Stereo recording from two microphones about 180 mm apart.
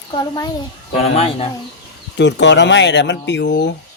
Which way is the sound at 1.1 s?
30° left (ahead or behind).